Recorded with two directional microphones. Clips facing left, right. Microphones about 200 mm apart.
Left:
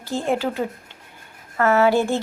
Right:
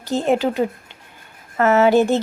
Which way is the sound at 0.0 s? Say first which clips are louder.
Right 4 dB; 20° right (ahead or behind).